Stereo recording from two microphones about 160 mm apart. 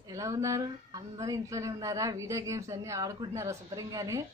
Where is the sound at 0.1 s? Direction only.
20° right (ahead or behind).